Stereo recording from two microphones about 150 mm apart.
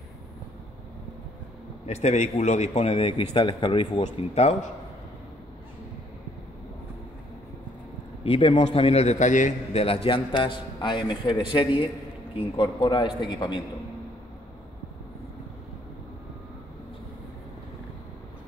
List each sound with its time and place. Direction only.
1.9 s a man's voice: 45° left (ahead or behind)
8.2 s a man's voice: 35° left (ahead or behind)